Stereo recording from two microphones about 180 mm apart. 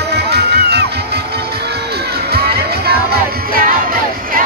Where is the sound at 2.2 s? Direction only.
60° right (ahead or behind).